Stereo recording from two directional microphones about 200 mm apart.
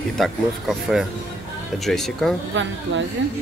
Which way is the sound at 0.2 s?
Centre (ahead or behind).